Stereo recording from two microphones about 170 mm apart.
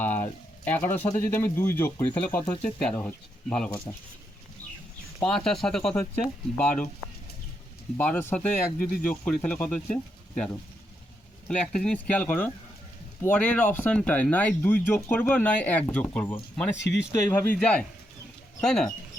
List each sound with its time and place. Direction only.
0.0 s a sound: 10° left (ahead or behind)
0.7 s speech: 10° left (ahead or behind)
5.2 s speech: 5° left (ahead or behind)
7.9 s speech: 10° left (ahead or behind)
8.8 s speech: 60° left (ahead or behind)
9.0 s speech: 5° left (ahead or behind)